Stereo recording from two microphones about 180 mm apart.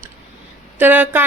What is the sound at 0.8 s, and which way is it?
Speech, 10° right (ahead or behind).